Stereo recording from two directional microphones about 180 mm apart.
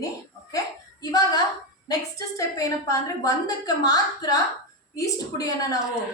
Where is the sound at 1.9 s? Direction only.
20° left (ahead or behind).